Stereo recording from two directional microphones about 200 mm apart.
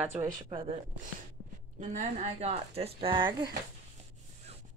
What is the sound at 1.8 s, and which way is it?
Speech, 35° right (ahead or behind).